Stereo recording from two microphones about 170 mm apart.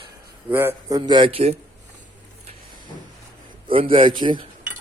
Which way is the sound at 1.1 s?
30° right (ahead or behind).